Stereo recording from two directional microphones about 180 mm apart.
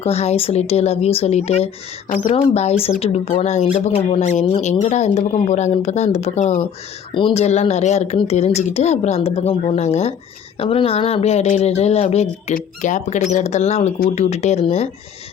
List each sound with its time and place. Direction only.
0.0 s a woman's voice: 35° left (ahead or behind)